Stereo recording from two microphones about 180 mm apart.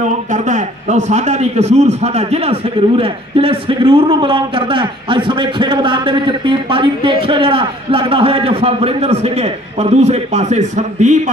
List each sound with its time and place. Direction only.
0.0 s a man's voice: 40° right (ahead or behind)